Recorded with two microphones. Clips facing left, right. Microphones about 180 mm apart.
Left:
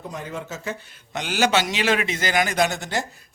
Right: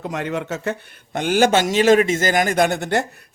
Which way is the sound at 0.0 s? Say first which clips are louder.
Right 7 dB; 75° right (ahead or behind).